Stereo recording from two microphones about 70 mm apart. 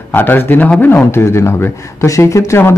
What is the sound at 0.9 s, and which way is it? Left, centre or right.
Speech, left.